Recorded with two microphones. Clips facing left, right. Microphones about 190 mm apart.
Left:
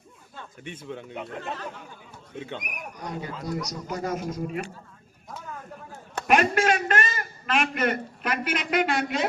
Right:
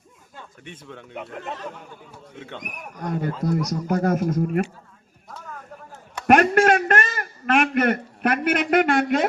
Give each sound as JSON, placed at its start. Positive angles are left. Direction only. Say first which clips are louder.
{"t": 0.6, "sound": "speech", "louder": "left 5 dB", "side_deg": 0}
{"t": 3.0, "sound": "a man's voice", "louder": "right 9 dB", "side_deg": -50}
{"t": 6.2, "sound": "a sound", "louder": "right 5 dB", "side_deg": -60}